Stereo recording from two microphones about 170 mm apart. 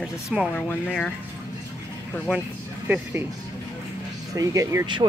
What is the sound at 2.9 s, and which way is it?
Speech, 10° right (ahead or behind).